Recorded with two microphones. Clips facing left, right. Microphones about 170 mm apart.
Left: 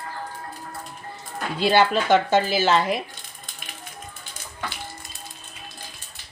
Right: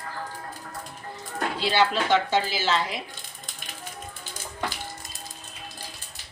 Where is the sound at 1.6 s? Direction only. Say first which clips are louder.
Left 5 dB; 50° left (ahead or behind).